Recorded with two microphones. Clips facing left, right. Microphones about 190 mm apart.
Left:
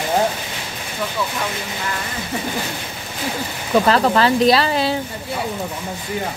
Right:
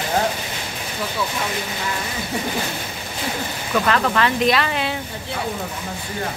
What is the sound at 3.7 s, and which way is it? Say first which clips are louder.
Speech: left 4 dB; 30° left (ahead or behind).